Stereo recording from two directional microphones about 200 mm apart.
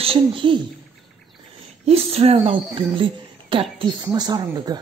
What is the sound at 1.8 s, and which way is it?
Speech, 30° right (ahead or behind).